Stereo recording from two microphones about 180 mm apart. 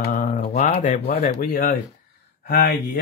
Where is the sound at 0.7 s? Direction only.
45° left (ahead or behind).